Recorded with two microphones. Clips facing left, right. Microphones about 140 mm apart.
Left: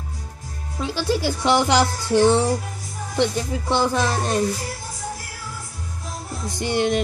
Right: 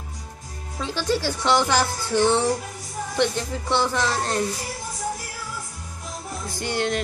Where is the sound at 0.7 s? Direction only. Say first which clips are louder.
Left 2 dB; 10° left (ahead or behind).